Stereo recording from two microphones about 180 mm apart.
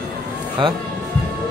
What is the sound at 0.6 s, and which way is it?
Speech, 30° right (ahead or behind).